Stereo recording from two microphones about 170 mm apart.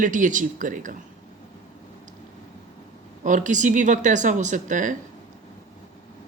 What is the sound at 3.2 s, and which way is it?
Speech, 50° right (ahead or behind).